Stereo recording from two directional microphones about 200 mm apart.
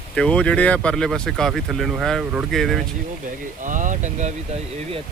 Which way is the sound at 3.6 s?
40° right (ahead or behind).